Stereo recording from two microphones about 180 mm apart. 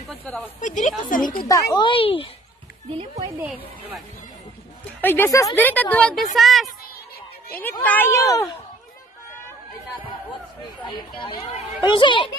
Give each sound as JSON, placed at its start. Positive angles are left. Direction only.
{"t": 0.1, "sound": "a woman's voice", "side_deg": 0}
{"t": 0.6, "sound": "speech", "side_deg": 45}
{"t": 1.5, "sound": "a child's voice", "side_deg": 25}
{"t": 5.0, "sound": "a woman's voice", "side_deg": 10}
{"t": 11.9, "sound": "a child's voice", "side_deg": 25}